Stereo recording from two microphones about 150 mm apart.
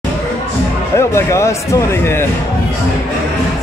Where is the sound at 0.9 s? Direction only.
20° left (ahead or behind).